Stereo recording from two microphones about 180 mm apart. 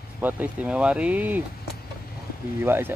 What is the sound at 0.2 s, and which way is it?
Speech, 10° right (ahead or behind).